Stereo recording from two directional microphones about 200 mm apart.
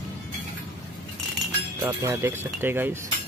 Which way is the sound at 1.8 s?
10° right (ahead or behind).